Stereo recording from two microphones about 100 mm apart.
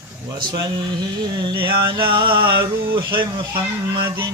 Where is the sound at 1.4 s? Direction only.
50° right (ahead or behind).